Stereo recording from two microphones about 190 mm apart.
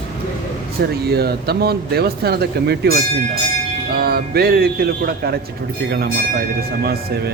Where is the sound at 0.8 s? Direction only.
55° right (ahead or behind).